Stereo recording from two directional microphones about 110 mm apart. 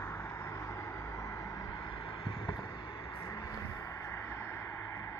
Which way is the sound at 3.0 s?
25° left (ahead or behind).